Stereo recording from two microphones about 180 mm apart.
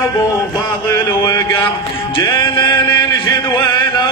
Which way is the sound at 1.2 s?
20° left (ahead or behind).